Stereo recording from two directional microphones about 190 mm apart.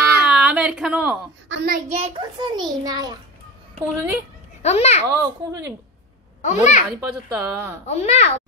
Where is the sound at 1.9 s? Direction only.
35° right (ahead or behind).